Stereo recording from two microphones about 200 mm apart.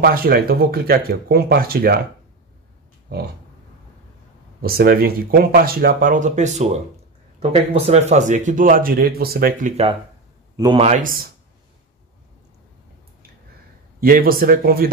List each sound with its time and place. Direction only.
0.0 s speech: 50° right (ahead or behind)
4.6 s speech: 50° right (ahead or behind)
10.5 s a sound: 15° right (ahead or behind)
10.8 s speech: 35° right (ahead or behind)
13.9 s speech: 45° right (ahead or behind)